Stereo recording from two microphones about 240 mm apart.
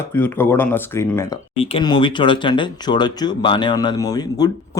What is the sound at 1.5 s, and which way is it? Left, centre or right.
Speech, left.